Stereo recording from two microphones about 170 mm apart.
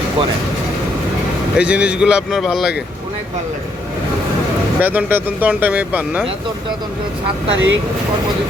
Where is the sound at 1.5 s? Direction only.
5° right (ahead or behind).